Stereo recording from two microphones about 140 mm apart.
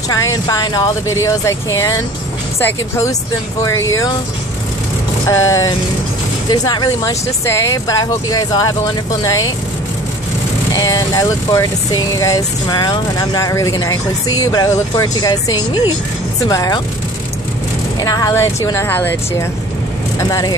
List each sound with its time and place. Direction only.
0.1 s speech: 25° left (ahead or behind)
5.3 s speech: 20° left (ahead or behind)
10.7 s speech: 25° left (ahead or behind)
18.0 s speech: 25° left (ahead or behind)
20.2 s speech: 25° left (ahead or behind)